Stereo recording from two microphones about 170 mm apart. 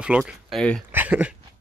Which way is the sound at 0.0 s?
5° right (ahead or behind).